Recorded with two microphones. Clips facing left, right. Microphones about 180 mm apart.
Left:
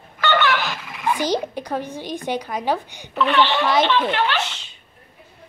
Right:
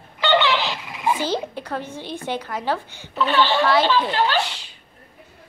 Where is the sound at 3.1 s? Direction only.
35° right (ahead or behind).